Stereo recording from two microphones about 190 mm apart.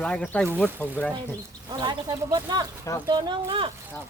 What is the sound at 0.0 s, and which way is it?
Speech, 5° left (ahead or behind).